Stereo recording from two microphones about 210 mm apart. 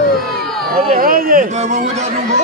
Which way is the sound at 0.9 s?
40° right (ahead or behind).